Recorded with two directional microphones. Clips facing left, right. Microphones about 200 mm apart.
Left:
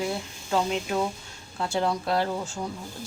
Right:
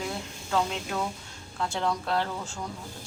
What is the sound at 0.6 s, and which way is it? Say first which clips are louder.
A woman's voice: left 3 dB; 20° left (ahead or behind).